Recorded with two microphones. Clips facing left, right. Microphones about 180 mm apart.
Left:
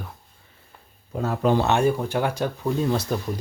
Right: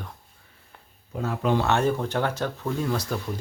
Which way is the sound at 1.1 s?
40° left (ahead or behind).